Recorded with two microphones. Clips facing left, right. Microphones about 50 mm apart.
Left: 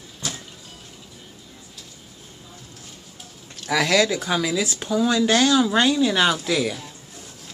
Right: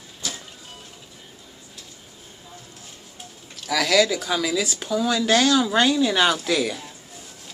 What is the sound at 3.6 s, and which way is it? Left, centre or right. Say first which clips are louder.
Speech: even; left.